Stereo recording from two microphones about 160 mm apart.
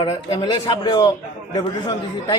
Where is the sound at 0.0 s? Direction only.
35° left (ahead or behind).